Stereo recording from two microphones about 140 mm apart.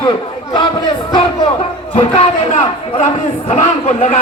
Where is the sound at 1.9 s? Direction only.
50° left (ahead or behind).